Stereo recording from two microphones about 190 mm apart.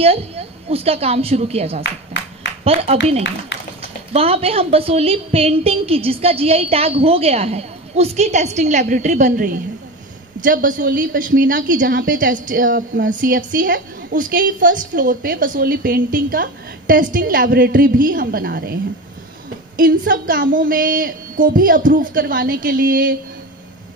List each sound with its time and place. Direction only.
0.0 s a woman's voice: 30° right (ahead or behind); by 18.8 s 55° right (ahead or behind)
19.8 s a woman's voice: 45° right (ahead or behind)